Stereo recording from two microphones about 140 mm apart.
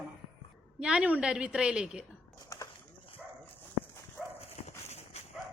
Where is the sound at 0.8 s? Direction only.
5° right (ahead or behind).